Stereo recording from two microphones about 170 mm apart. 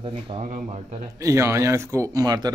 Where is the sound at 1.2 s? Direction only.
15° right (ahead or behind).